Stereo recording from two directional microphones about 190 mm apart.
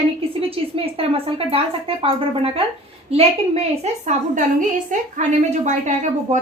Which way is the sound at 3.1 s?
30° right (ahead or behind).